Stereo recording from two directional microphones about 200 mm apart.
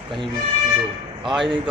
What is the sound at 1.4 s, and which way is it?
Speech, 25° right (ahead or behind).